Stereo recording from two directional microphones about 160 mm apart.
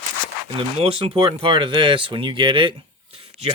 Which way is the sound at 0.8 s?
35° right (ahead or behind).